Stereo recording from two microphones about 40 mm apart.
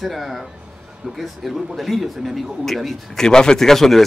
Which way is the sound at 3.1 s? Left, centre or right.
Centre.